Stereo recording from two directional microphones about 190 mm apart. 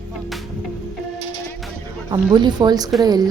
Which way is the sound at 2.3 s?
20° right (ahead or behind).